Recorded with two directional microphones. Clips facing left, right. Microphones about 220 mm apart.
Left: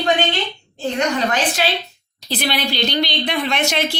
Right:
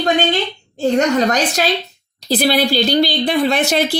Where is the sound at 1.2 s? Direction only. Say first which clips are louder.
Right 4 dB; 40° right (ahead or behind).